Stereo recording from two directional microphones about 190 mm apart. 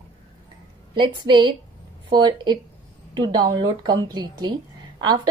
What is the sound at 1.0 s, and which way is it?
A woman's voice, 25° right (ahead or behind).